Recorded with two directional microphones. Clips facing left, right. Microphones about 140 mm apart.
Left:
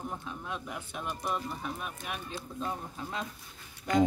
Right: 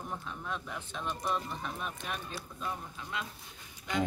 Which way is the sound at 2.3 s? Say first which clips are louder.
Left 3 dB; 30° left (ahead or behind).